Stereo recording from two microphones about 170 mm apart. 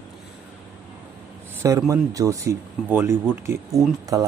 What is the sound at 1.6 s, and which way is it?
Speech, 20° right (ahead or behind).